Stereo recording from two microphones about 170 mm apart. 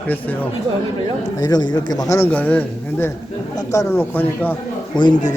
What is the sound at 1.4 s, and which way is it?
A man's voice, 25° left (ahead or behind).